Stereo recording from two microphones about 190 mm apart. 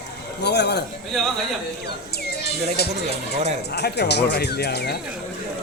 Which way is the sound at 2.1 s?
55° left (ahead or behind).